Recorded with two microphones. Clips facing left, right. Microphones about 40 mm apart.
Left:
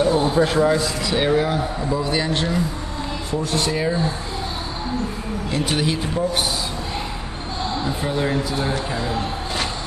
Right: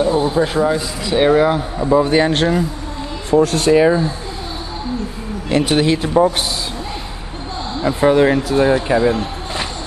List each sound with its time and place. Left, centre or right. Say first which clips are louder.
0.0 s a man's voice: right 2 dB; centre
1.0 s speech: right 9 dB; centre
2.0 s speech: right 7 dB; right
3.3 s speech: right 11 dB; right
5.5 s speech: right 8 dB; right
7.8 s speech: right 13 dB; right
8.8 s speech: right 10 dB; right